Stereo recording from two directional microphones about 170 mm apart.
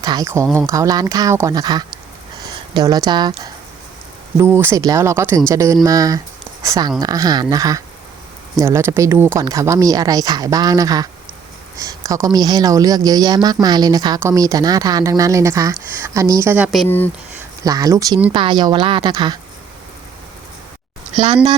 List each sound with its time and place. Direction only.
0.0 s speech: 20° right (ahead or behind)
4.4 s speech: 15° right (ahead or behind)
16.7 s speech: 5° left (ahead or behind)
17.6 s speech: 20° right (ahead or behind)